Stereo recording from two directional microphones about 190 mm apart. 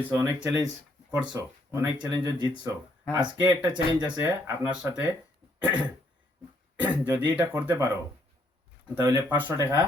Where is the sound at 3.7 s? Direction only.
20° right (ahead or behind).